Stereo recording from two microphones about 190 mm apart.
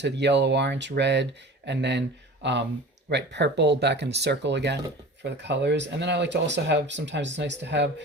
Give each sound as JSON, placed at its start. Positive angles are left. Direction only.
{"t": 0.0, "sound": "speech", "side_deg": -65}